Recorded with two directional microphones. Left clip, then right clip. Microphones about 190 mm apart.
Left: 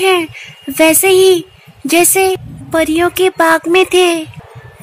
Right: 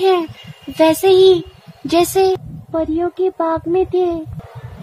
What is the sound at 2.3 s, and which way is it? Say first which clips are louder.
Speech: left 6 dB; 30° left (ahead or behind).